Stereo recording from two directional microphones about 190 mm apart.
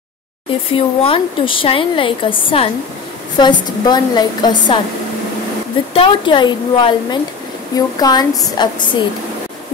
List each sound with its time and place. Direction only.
0.7 s a woman's voice: 30° left (ahead or behind)
5.9 s a woman's voice: 25° left (ahead or behind)